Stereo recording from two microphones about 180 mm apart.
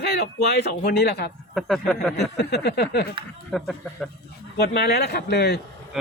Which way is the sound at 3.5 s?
5° left (ahead or behind).